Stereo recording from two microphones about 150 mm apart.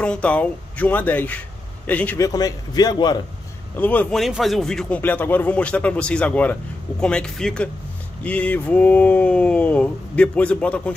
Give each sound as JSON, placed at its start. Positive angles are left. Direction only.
{"t": 0.0, "sound": "speech", "side_deg": 10}
{"t": 2.1, "sound": "a man's voice", "side_deg": 25}
{"t": 3.7, "sound": "speech", "side_deg": 10}
{"t": 4.2, "sound": "speech", "side_deg": 0}